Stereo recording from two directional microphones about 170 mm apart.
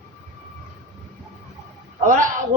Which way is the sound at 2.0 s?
50° right (ahead or behind).